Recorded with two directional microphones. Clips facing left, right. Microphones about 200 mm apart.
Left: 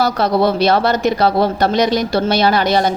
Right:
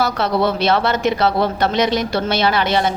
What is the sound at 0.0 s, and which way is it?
Speech, 35° left (ahead or behind).